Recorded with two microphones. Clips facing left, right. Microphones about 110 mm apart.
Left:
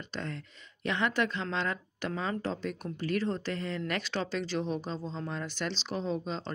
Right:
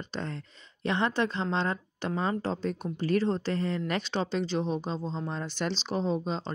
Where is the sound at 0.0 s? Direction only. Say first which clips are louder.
Right 2 dB; 30° right (ahead or behind).